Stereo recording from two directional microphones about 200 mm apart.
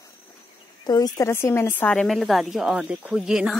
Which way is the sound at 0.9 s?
20° left (ahead or behind).